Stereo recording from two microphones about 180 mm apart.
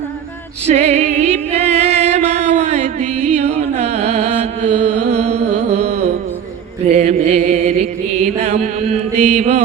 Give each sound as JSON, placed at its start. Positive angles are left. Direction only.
{"t": 0.7, "sound": "music", "side_deg": -35}
{"t": 6.9, "sound": "chant", "side_deg": -35}